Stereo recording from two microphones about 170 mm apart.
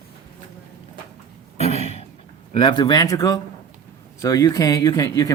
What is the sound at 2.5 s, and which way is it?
A man's voice, 25° left (ahead or behind).